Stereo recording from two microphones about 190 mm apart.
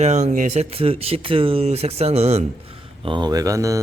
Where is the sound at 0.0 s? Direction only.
35° right (ahead or behind).